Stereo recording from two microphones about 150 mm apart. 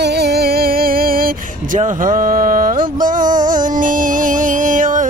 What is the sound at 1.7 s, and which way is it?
Music, 60° right (ahead or behind).